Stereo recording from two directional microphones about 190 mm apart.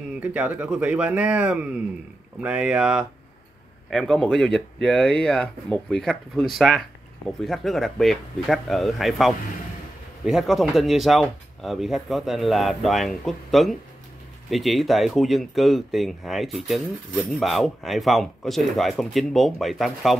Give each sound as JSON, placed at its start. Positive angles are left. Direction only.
{"t": 0.2, "sound": "speech", "side_deg": -10}